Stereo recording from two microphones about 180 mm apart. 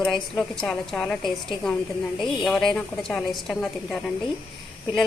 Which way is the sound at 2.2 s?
Centre (ahead or behind).